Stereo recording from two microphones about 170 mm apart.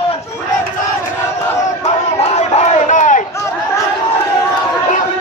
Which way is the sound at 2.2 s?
40° left (ahead or behind).